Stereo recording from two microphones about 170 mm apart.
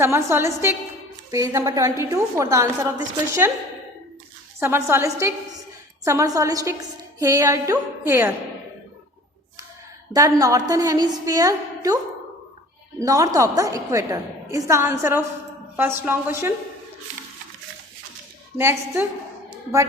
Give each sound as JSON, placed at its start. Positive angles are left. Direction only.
{"t": 0.0, "sound": "a woman's voice", "side_deg": -15}
{"t": 4.6, "sound": "a woman's voice", "side_deg": -15}
{"t": 10.1, "sound": "a woman's voice", "side_deg": -20}
{"t": 13.0, "sound": "a woman's voice", "side_deg": -20}
{"t": 18.5, "sound": "a woman's voice", "side_deg": -15}